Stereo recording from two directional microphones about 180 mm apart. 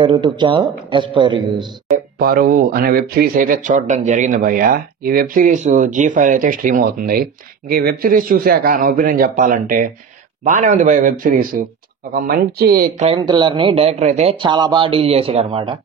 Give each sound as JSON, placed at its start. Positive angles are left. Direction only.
{"t": 0.0, "sound": "speech", "side_deg": -25}
{"t": 2.1, "sound": "speech", "side_deg": -50}
{"t": 13.0, "sound": "speech", "side_deg": -25}
{"t": 14.4, "sound": "speech", "side_deg": -25}